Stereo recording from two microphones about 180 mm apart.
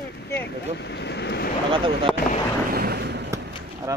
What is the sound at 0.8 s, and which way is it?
Speech, 70° left (ahead or behind).